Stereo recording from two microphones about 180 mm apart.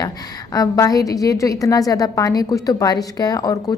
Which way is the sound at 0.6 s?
20° left (ahead or behind).